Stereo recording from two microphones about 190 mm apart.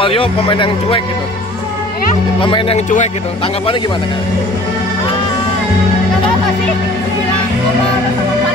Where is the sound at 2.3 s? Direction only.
25° left (ahead or behind).